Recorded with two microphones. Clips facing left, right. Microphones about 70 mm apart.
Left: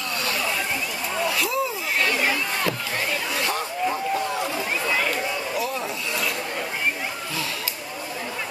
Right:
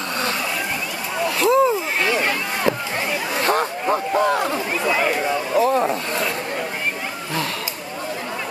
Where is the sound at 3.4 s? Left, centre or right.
Right.